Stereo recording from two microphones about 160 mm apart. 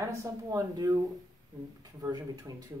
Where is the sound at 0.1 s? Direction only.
20° right (ahead or behind).